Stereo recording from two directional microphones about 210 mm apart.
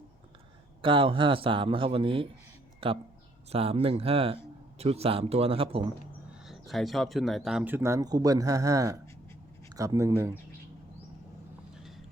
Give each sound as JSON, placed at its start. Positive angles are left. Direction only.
{"t": 0.8, "sound": "a man's voice", "side_deg": -25}
{"t": 6.5, "sound": "speech", "side_deg": 0}
{"t": 11.7, "sound": "vehicle", "side_deg": 0}